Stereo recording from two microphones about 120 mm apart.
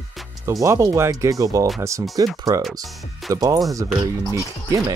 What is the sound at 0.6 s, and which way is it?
Speech, 25° right (ahead or behind).